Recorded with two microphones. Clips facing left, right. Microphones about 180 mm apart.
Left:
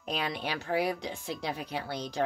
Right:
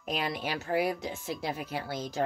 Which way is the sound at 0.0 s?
5° right (ahead or behind).